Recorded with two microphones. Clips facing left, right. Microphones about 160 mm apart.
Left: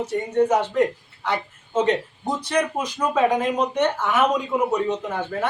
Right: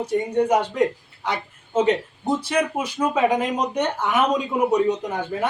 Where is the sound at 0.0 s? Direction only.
10° right (ahead or behind).